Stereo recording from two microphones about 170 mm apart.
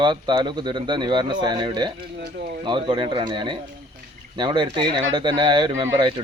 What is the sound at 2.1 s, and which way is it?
Speech, 85° right.